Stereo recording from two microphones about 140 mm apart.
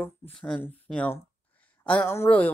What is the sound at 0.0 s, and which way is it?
Speech, 10° left (ahead or behind).